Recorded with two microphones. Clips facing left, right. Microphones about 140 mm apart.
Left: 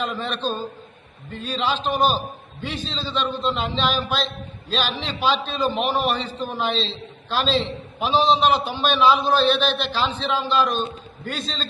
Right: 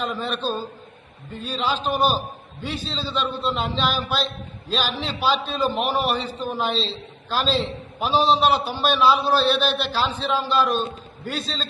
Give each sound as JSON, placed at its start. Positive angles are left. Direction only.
{"t": 0.2, "sound": "a man's voice", "side_deg": -5}